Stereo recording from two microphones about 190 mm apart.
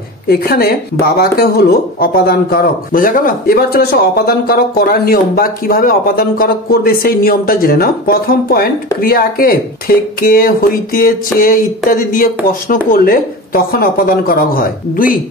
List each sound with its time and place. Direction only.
0.3 s speech: 55° left (ahead or behind)